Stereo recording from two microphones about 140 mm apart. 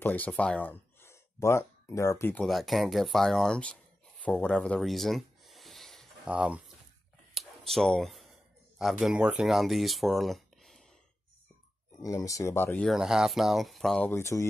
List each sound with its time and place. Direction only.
0.0 s speech: 10° left (ahead or behind)
2.4 s speech: centre (ahead or behind)
4.2 s a sound: 10° left (ahead or behind)
6.2 s speech: 10° right (ahead or behind)
7.3 s a sound: centre (ahead or behind)
9.0 s speech: 5° right (ahead or behind)
12.0 s speech: 25° left (ahead or behind)
12.8 s speech: 5° right (ahead or behind)
14.0 s speech: 20° left (ahead or behind)